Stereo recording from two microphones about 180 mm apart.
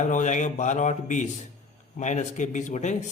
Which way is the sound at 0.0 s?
45° left (ahead or behind).